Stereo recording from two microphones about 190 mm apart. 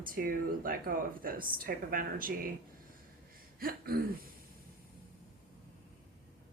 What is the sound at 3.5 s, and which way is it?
Throat clearing, 50° right (ahead or behind).